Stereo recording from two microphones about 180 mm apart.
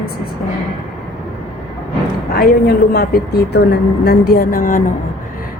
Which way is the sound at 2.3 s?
60° left (ahead or behind).